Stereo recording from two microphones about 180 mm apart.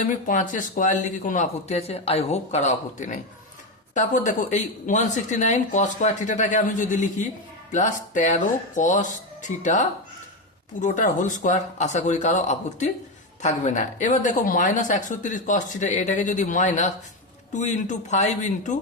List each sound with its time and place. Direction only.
0.3 s speech: 45° left (ahead or behind)